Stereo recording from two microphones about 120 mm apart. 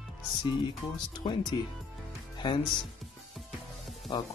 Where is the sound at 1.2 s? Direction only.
40° left (ahead or behind).